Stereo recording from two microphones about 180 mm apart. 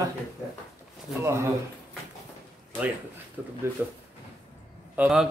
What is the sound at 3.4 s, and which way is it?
Speech, 10° right (ahead or behind).